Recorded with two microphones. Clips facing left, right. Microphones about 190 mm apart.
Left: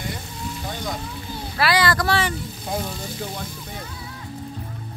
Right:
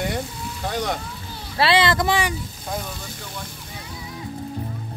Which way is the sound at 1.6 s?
25° right (ahead or behind).